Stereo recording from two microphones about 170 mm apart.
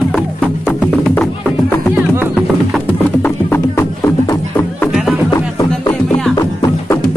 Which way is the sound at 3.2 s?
15° left (ahead or behind).